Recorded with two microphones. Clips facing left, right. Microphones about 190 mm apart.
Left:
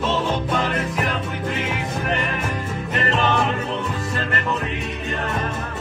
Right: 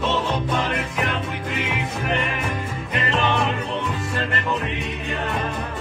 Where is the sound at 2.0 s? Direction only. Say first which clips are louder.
Right 1 dB; centre (ahead or behind).